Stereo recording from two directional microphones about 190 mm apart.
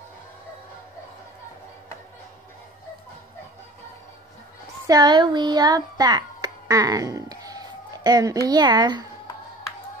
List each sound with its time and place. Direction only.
4.8 s a child's voice: 20° right (ahead or behind)